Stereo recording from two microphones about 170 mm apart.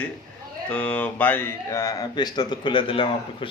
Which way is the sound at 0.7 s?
10° left (ahead or behind).